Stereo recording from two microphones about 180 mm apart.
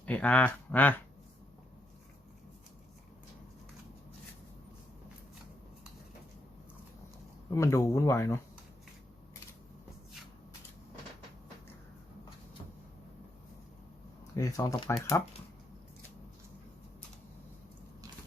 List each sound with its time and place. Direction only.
0.0 s speech: 5° left (ahead or behind)
7.5 s speech: 15° left (ahead or behind)
14.3 s speech: 20° left (ahead or behind)